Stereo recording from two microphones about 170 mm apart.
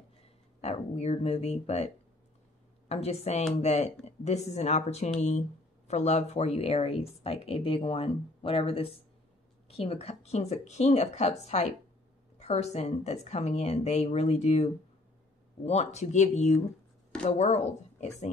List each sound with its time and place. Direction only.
0.6 s speech: 40° left (ahead or behind)
2.9 s speech: 40° left (ahead or behind)